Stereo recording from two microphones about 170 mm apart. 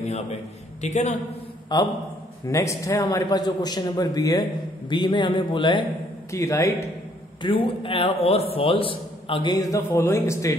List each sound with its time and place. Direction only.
0.0 s a man's voice: 40° left (ahead or behind)
1.7 s a man's voice: 25° left (ahead or behind)
6.3 s a man's voice: 15° left (ahead or behind)
7.4 s a man's voice: 30° left (ahead or behind)